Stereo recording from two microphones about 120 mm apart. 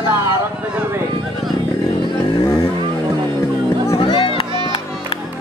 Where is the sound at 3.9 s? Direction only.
45° left (ahead or behind).